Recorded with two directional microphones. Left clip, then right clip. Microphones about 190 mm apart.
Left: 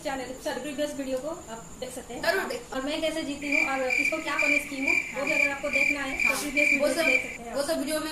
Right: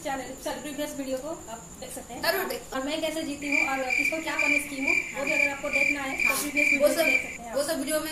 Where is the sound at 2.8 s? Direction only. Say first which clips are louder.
Left 1 dB; 15° left (ahead or behind).